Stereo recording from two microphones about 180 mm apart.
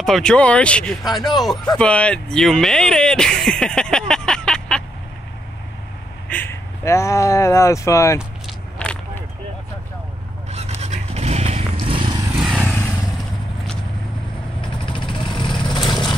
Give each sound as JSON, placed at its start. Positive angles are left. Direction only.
{"t": 0.0, "sound": "speech", "side_deg": 5}
{"t": 6.2, "sound": "speech", "side_deg": 10}
{"t": 8.2, "sound": "vehicle", "side_deg": 0}
{"t": 10.5, "sound": "a sound", "side_deg": -35}
{"t": 11.8, "sound": "vehicle", "side_deg": -30}
{"t": 12.4, "sound": "vehicle", "side_deg": -5}
{"t": 12.6, "sound": "vehicle", "side_deg": 10}
{"t": 14.9, "sound": "vehicle", "side_deg": 25}